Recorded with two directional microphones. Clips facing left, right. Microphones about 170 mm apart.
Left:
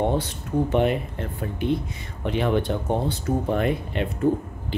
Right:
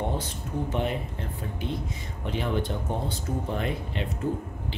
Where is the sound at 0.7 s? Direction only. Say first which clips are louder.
Left 8 dB; 65° left (ahead or behind).